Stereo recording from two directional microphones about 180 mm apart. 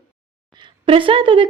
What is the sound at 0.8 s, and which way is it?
Speech, 30° right (ahead or behind).